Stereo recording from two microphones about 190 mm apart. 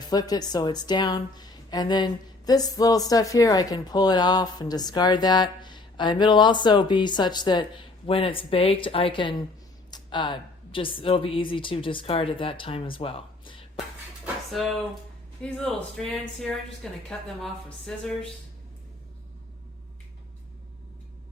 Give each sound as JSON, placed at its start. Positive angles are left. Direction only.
{"t": 0.1, "sound": "speech", "side_deg": 20}
{"t": 14.5, "sound": "speech", "side_deg": 0}